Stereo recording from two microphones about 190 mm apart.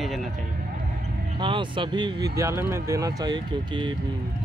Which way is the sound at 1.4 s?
25° right (ahead or behind).